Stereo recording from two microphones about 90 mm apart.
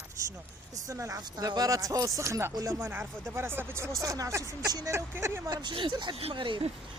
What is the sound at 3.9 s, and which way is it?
Speech, 40° right (ahead or behind).